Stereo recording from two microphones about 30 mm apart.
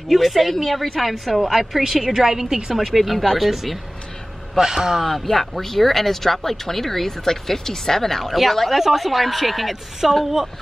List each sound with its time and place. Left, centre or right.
0.1 s a woman's voice: centre
2.7 s a woman's voice: centre
4.6 s a man's voice: centre
5.0 s a woman's voice: centre